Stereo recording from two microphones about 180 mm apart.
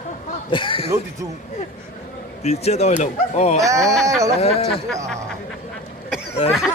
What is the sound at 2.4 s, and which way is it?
Speech, 35° left (ahead or behind).